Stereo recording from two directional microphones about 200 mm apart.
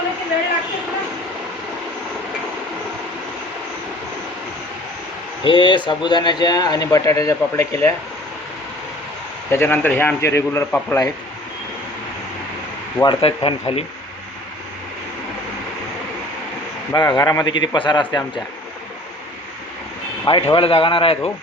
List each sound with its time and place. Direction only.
5.4 s speech: 25° left (ahead or behind)
9.5 s a man's voice: 10° left (ahead or behind)
13.0 s speech: 25° left (ahead or behind)
16.9 s speech: 20° left (ahead or behind)
20.2 s speech: 25° left (ahead or behind)